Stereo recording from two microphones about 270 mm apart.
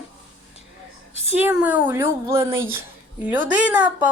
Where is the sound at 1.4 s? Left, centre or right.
Centre.